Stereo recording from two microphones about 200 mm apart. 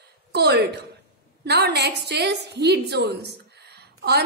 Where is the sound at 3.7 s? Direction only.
55° right (ahead or behind).